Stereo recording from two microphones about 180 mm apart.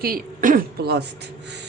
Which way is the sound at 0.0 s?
55° right (ahead or behind).